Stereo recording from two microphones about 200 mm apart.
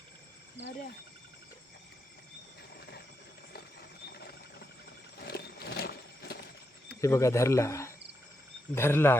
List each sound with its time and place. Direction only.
5.2 s a sound: 50° left (ahead or behind)
7.0 s cricket: 15° left (ahead or behind)
8.7 s speech: 10° left (ahead or behind)